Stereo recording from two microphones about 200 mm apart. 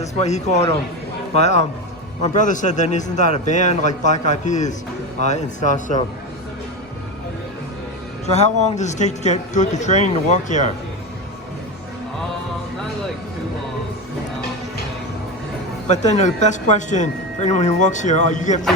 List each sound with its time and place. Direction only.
0.0 s speech: 35° left (ahead or behind)
8.3 s speech: 35° left (ahead or behind)
15.9 s speech: 35° left (ahead or behind)